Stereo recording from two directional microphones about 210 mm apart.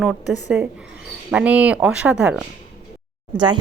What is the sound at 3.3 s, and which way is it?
Speech, 20° right (ahead or behind).